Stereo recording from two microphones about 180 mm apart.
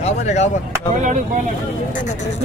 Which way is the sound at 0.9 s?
45° right (ahead or behind).